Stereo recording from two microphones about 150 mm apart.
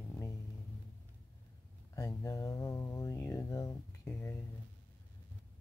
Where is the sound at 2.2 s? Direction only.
25° left (ahead or behind).